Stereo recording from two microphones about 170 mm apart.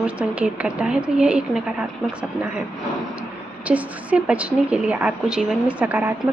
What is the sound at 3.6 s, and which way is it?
A woman's voice, 10° right (ahead or behind).